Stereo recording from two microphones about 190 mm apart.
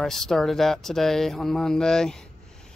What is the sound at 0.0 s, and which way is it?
Speech, centre (ahead or behind).